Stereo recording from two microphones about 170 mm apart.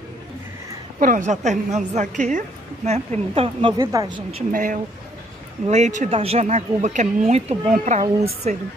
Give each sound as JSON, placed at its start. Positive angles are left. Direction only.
{"t": 0.9, "sound": "a woman's voice", "side_deg": -50}
{"t": 3.7, "sound": "a woman's voice", "side_deg": -20}
{"t": 4.5, "sound": "a woman's voice", "side_deg": -50}